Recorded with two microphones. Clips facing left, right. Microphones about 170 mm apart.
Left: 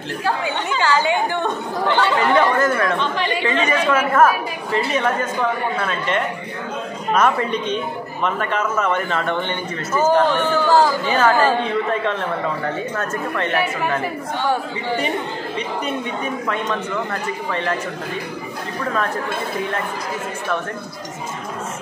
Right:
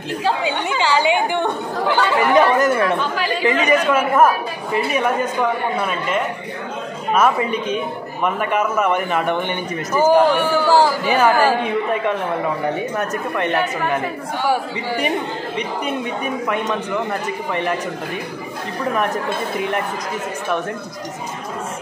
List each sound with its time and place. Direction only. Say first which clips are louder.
0.2 s speech: right 2 dB; 15° right (ahead or behind)